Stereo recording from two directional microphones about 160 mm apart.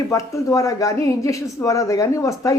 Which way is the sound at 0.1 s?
20° left (ahead or behind).